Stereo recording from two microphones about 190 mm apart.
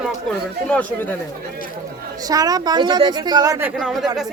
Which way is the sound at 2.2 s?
20° right (ahead or behind).